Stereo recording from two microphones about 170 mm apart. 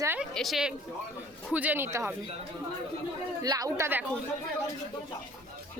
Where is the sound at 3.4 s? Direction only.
20° right (ahead or behind).